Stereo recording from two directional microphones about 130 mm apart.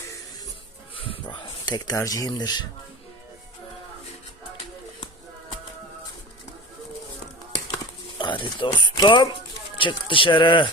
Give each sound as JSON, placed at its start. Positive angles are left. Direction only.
{"t": 0.9, "sound": "speech", "side_deg": 45}
{"t": 8.2, "sound": "speech", "side_deg": 40}